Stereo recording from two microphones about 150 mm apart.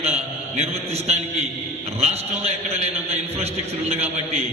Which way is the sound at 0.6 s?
45° right (ahead or behind).